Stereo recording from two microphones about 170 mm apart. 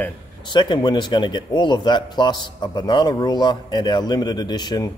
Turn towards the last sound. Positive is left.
turn(degrees=25)  # may be behind; listen again after turning